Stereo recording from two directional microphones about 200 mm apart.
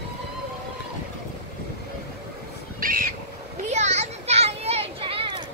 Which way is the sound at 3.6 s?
35° right (ahead or behind).